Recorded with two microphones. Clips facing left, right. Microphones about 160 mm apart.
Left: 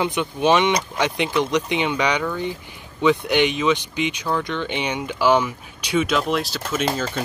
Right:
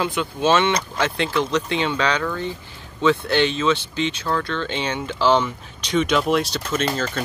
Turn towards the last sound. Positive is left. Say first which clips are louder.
# even
turn(degrees=15)  # may be behind; listen again after turning